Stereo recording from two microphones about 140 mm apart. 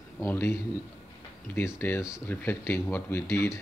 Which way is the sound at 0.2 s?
15° left (ahead or behind).